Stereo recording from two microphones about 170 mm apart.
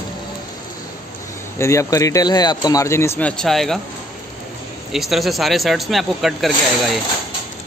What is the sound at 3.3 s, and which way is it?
Speech, centre (ahead or behind).